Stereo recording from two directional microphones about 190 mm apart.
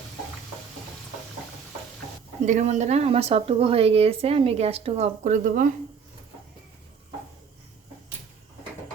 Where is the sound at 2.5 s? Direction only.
40° right (ahead or behind).